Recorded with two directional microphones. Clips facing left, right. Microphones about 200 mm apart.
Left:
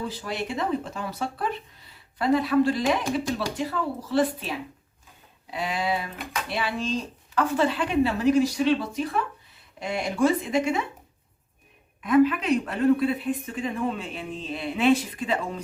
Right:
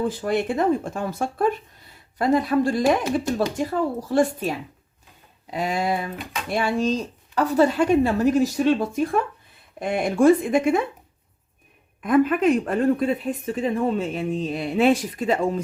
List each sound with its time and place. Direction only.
0.0 s speech: 50° right (ahead or behind)
12.0 s speech: 50° right (ahead or behind)